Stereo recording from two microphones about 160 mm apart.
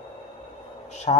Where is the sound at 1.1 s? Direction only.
35° left (ahead or behind).